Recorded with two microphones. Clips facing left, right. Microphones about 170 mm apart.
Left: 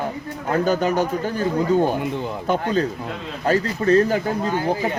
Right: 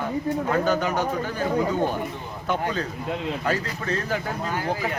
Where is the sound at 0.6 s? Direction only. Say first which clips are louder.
Left 3 dB; 40° left (ahead or behind).